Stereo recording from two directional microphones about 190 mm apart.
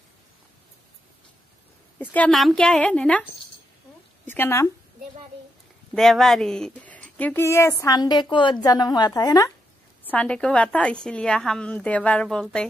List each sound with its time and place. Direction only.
2.0 s a woman's voice: 5° left (ahead or behind)
4.3 s speech: 10° left (ahead or behind)
5.9 s speech: centre (ahead or behind); by 9.5 s 20° left (ahead or behind)
10.0 s a woman's voice: 5° left (ahead or behind)